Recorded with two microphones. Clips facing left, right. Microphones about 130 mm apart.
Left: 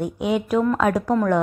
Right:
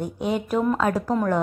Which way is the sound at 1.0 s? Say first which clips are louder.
Left 3 dB; 5° right (ahead or behind).